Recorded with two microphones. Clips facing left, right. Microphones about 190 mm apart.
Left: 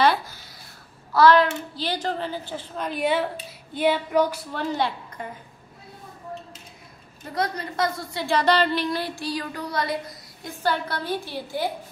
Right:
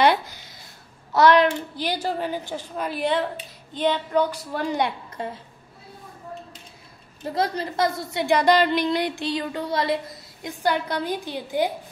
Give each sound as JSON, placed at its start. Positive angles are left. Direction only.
{"t": 0.0, "sound": "a sound", "side_deg": -20}
{"t": 1.1, "sound": "a woman's voice", "side_deg": -20}
{"t": 2.9, "sound": "speech", "side_deg": 5}
{"t": 3.7, "sound": "a sound", "side_deg": 10}
{"t": 4.5, "sound": "a woman's voice", "side_deg": -15}
{"t": 7.3, "sound": "a woman's voice", "side_deg": -25}
{"t": 10.6, "sound": "a woman's voice", "side_deg": -15}